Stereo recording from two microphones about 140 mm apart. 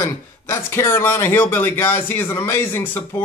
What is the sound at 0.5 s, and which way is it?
Speech, 20° left (ahead or behind).